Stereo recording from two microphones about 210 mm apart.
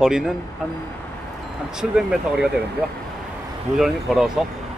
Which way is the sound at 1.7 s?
5° right (ahead or behind).